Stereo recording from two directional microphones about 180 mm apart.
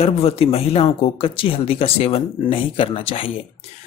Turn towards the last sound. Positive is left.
turn(degrees=30)  # may be behind; listen again after turning